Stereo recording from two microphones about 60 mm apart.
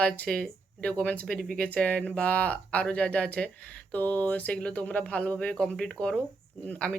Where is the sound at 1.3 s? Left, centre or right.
Centre.